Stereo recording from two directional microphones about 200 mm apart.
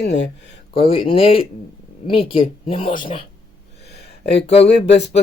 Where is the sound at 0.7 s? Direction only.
25° left (ahead or behind).